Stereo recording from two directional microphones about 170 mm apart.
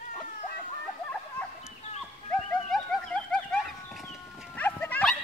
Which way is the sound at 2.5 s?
5° left (ahead or behind).